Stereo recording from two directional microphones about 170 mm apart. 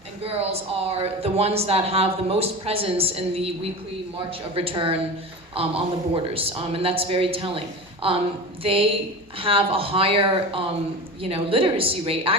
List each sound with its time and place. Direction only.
0.3 s a man's voice: 35° right (ahead or behind)